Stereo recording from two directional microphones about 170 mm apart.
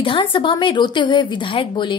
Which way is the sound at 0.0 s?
30° left (ahead or behind).